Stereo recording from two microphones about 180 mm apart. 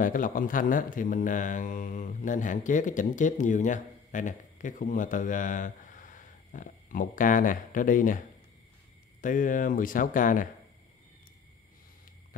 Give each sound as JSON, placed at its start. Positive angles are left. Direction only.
{"t": 0.0, "sound": "speech", "side_deg": 50}
{"t": 9.2, "sound": "speech", "side_deg": 45}